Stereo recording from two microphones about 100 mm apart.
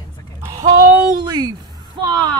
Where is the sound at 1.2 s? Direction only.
45° right (ahead or behind).